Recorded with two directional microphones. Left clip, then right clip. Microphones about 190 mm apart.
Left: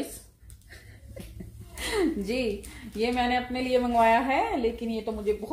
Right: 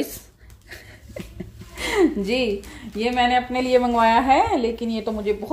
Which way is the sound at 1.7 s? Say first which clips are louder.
Right 8 dB; 50° right (ahead or behind).